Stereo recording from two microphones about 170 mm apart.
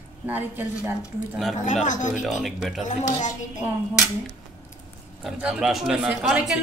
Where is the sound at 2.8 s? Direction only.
45° left (ahead or behind).